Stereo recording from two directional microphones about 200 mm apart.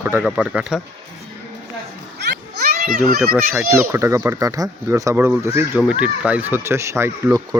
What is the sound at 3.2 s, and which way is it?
Speech, 10° right (ahead or behind).